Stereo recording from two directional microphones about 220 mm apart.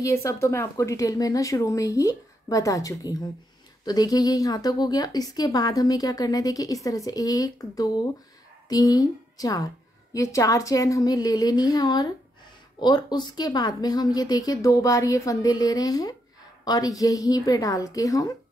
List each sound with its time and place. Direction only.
0.0 s a woman's voice: 15° left (ahead or behind)